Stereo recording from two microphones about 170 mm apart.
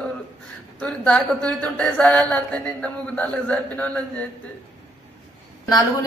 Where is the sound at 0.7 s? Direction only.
5° left (ahead or behind).